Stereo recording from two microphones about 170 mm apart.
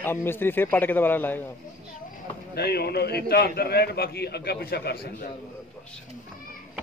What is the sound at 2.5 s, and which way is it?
A man's voice, 70° left (ahead or behind).